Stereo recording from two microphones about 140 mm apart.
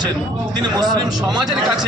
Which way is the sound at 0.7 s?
30° right (ahead or behind).